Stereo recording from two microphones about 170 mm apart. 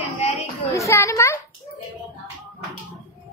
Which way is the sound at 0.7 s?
15° left (ahead or behind).